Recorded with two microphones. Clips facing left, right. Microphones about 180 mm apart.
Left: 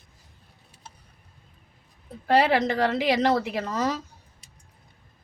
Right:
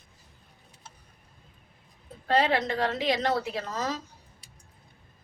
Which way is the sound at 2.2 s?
70° left (ahead or behind).